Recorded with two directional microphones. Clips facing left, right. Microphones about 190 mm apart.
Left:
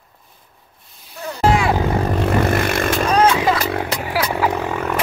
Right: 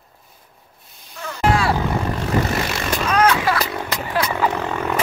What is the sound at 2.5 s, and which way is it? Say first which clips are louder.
Vehicle: left 5 dB; 55° left (ahead or behind).